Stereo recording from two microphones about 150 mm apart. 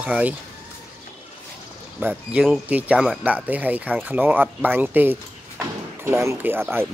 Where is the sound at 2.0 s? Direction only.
10° right (ahead or behind).